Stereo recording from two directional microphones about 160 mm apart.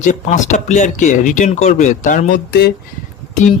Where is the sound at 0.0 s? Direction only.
50° left (ahead or behind).